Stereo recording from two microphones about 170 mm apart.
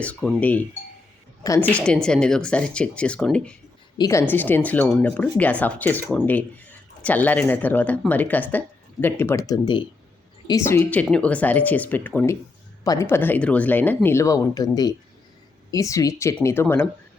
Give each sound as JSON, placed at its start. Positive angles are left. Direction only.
{"t": 0.3, "sound": "speech", "side_deg": 10}
{"t": 3.9, "sound": "speech", "side_deg": 20}